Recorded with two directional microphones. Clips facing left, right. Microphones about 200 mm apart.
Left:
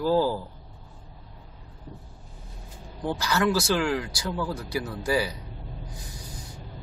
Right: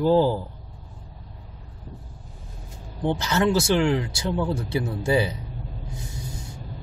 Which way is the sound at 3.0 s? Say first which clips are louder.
Right 3 dB; 25° right (ahead or behind).